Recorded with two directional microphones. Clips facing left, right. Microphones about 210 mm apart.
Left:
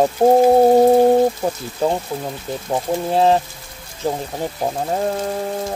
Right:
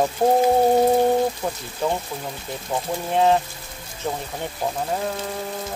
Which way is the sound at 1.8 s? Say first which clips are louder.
Left 5 dB; 35° left (ahead or behind).